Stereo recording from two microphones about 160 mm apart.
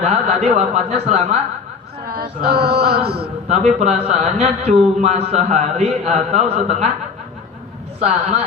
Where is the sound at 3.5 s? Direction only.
45° right (ahead or behind).